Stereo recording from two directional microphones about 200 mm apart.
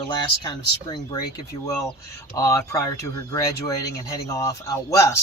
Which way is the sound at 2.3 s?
15° left (ahead or behind).